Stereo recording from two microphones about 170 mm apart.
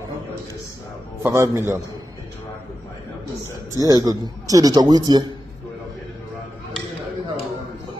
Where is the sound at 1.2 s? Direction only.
15° right (ahead or behind).